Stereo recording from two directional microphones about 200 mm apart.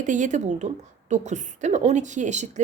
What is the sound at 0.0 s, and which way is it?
Speech, 40° right (ahead or behind).